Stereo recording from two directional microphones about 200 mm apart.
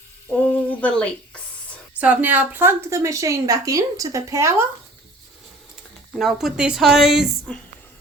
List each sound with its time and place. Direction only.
0.4 s a sound: 5° left (ahead or behind)
2.0 s a woman's voice: 10° right (ahead or behind)
6.1 s a woman's voice: centre (ahead or behind)